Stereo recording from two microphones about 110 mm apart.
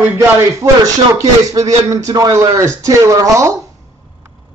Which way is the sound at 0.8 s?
30° right (ahead or behind).